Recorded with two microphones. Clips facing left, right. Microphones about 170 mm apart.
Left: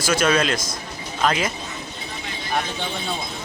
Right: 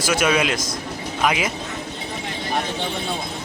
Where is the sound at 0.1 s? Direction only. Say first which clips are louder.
Even; 10° right (ahead or behind).